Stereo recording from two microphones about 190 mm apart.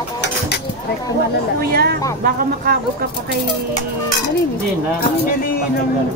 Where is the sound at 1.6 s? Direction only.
55° right (ahead or behind).